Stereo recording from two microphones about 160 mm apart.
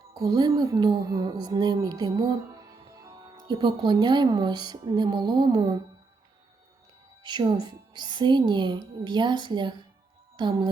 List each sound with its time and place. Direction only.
0.1 s speech: 25° right (ahead or behind)
7.2 s speech: 30° right (ahead or behind)
10.3 s music: 30° right (ahead or behind)